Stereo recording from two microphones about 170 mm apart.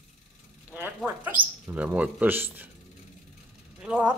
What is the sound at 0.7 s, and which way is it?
Speech, 10° right (ahead or behind).